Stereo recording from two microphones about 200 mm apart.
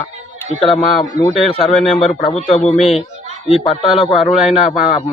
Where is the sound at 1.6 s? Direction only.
Centre (ahead or behind).